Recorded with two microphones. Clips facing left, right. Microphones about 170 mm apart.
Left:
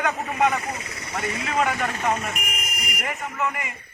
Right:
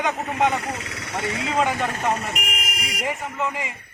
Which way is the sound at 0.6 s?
75° right (ahead or behind).